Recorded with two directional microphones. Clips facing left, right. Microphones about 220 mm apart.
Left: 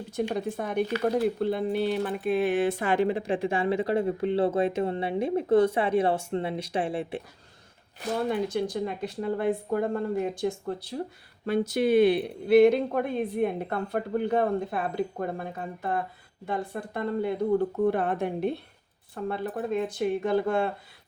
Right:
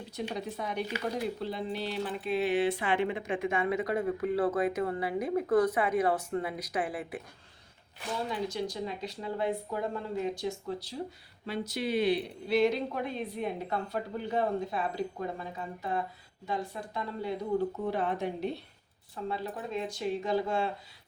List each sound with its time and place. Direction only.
0.2 s speech: 50° left (ahead or behind); by 7.2 s 30° left (ahead or behind)
8.3 s a woman's voice: 55° left (ahead or behind)